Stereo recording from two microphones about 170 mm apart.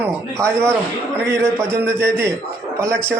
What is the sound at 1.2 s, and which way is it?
A man's voice, 15° right (ahead or behind).